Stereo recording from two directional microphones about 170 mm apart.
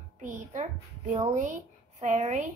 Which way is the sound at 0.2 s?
50° right (ahead or behind).